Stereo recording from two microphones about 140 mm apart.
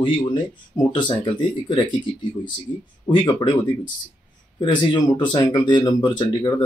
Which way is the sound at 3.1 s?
35° left (ahead or behind).